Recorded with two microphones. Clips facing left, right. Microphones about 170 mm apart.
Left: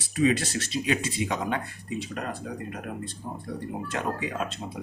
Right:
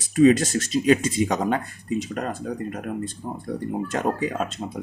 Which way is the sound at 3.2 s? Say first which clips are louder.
Right 3 dB; 50° right (ahead or behind).